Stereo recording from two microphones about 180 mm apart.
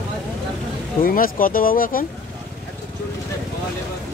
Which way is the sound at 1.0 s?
50° left (ahead or behind).